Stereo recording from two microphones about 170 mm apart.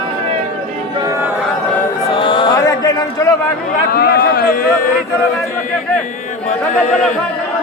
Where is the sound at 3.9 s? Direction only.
65° left (ahead or behind).